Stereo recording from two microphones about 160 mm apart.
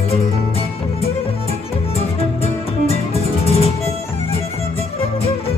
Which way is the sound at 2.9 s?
40° left (ahead or behind).